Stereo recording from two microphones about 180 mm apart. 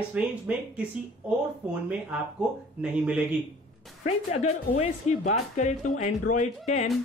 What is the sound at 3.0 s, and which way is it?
Speech, 5° right (ahead or behind).